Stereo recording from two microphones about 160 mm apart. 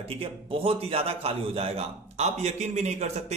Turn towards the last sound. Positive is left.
turn(degrees=-45)  # may be behind; listen again after turning